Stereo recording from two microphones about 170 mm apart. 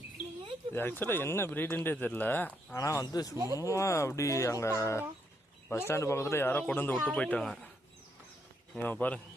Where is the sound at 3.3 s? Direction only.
20° right (ahead or behind).